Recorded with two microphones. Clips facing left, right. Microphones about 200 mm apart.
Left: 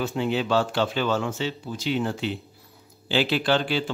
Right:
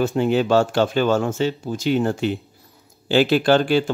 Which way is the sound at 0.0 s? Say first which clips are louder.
Right 7 dB; 50° right (ahead or behind).